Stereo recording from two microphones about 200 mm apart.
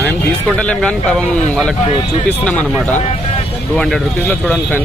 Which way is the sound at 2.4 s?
5° left (ahead or behind).